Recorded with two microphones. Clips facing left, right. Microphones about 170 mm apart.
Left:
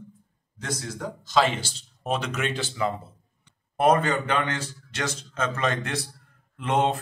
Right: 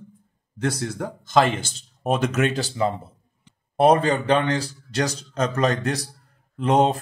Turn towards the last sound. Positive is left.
turn(degrees=-35)  # may be behind; listen again after turning